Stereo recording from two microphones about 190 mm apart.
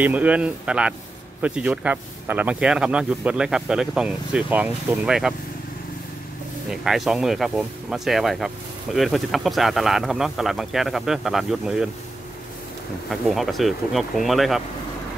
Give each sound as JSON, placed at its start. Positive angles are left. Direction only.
{"t": 0.0, "sound": "speech", "side_deg": -5}
{"t": 6.7, "sound": "speech", "side_deg": 0}
{"t": 13.1, "sound": "speech", "side_deg": 0}